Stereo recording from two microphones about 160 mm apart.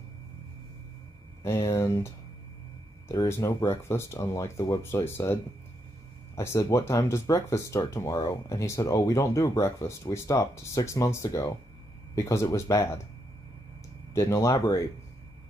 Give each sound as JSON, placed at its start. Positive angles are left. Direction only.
{"t": 1.4, "sound": "speech", "side_deg": 15}
{"t": 14.1, "sound": "speech", "side_deg": 20}